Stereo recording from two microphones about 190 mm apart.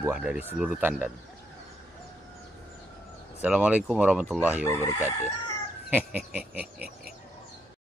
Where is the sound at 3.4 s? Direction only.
5° right (ahead or behind).